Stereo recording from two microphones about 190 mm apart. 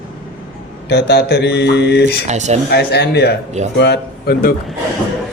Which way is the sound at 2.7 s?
60° left (ahead or behind).